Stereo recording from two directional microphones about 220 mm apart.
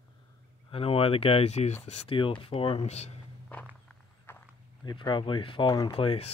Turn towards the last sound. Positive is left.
turn(degrees=25)  # may be behind; listen again after turning